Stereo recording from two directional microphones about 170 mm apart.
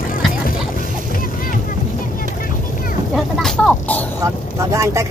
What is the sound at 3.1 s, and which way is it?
Speech, centre (ahead or behind).